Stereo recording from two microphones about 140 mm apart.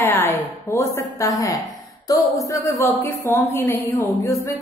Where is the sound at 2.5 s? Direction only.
20° left (ahead or behind).